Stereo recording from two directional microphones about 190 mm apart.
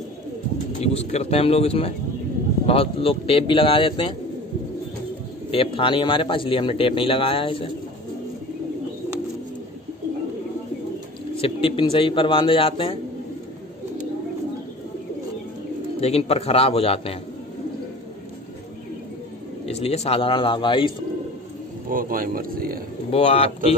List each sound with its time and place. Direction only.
0.7 s a man's voice: 35° left (ahead or behind)
5.5 s a man's voice: 30° left (ahead or behind)
11.4 s a man's voice: 30° left (ahead or behind)
16.0 s speech: 35° left (ahead or behind)
19.6 s a man's voice: 35° left (ahead or behind)
21.8 s speech: 45° right (ahead or behind)
23.1 s speech: 30° left (ahead or behind)